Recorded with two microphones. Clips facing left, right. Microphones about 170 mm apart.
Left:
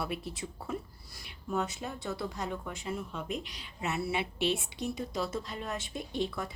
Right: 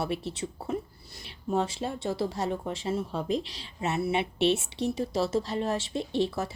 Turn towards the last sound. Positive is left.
turn(degrees=-25)  # may be behind; listen again after turning